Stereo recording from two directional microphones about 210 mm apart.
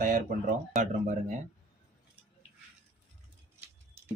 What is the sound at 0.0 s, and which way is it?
Speech, 40° right (ahead or behind).